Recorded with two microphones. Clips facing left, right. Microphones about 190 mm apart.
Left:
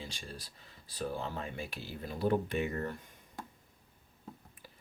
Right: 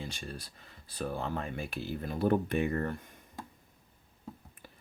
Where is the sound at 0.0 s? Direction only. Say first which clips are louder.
Right 4 dB; 55° right (ahead or behind).